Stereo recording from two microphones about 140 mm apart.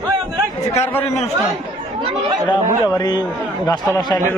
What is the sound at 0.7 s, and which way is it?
Speech, 20° left (ahead or behind).